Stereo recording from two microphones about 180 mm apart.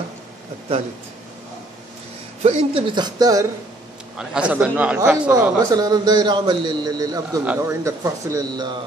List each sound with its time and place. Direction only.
2.4 s a man's voice: 30° right (ahead or behind)
4.2 s speech: 5° right (ahead or behind)
5.7 s a man's voice: 20° right (ahead or behind)